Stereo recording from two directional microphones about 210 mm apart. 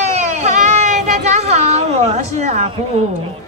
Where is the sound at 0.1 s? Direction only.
35° right (ahead or behind).